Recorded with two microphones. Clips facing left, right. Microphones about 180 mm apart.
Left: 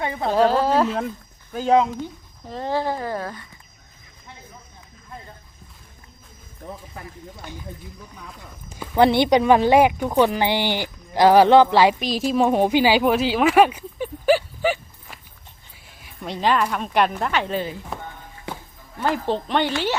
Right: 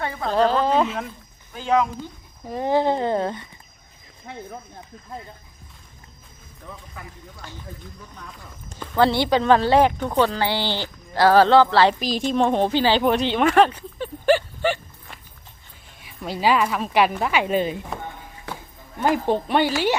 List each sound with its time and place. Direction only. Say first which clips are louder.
0.0 s speech: left 2 dB; 20° left (ahead or behind)
0.3 s speech: left 1 dB; 10° left (ahead or behind)
1.5 s speech: left 3 dB; 40° left (ahead or behind)
2.5 s speech: right 4 dB; 15° right (ahead or behind)
4.3 s speech: right 9 dB; 65° right (ahead or behind)
6.7 s speech: left 3 dB; 35° left (ahead or behind)
8.8 s speech: left 3 dB; 15° left (ahead or behind)
11.9 s a woman's voice: left 1 dB; centre (ahead or behind); by 17.7 s 15° right (ahead or behind)
19.0 s speech: right 2 dB; 15° right (ahead or behind)